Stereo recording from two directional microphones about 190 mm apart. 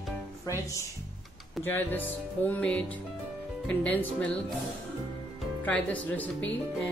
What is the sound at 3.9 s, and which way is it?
Speech, 10° left (ahead or behind).